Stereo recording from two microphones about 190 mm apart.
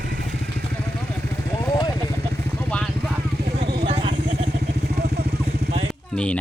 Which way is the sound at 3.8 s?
30° right (ahead or behind).